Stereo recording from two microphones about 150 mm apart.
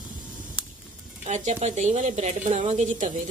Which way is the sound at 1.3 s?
50° right (ahead or behind).